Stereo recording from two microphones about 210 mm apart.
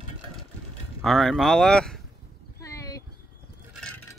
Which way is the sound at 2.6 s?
15° left (ahead or behind).